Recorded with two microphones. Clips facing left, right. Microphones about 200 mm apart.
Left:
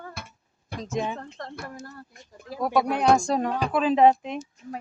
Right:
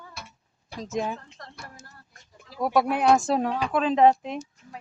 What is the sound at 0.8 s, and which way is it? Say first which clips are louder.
Speech: even; centre (ahead or behind).